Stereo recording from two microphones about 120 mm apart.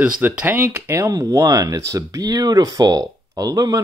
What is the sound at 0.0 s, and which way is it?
Speech, 15° right (ahead or behind).